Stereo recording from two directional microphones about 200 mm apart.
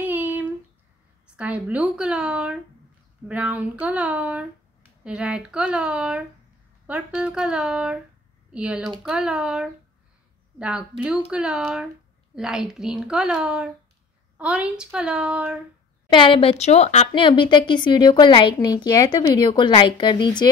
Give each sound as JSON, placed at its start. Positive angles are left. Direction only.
{"t": 0.0, "sound": "a sound", "side_deg": -10}
{"t": 1.2, "sound": "speech", "side_deg": -5}
{"t": 16.1, "sound": "a woman's voice", "side_deg": 25}